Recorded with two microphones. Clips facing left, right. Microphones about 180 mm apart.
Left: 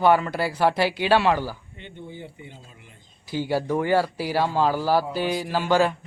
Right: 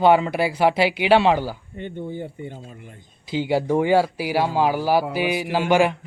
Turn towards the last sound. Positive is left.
turn(degrees=-15)  # may be behind; listen again after turning